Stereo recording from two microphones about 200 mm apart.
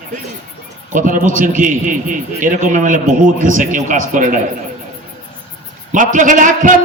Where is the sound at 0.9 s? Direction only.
40° right (ahead or behind).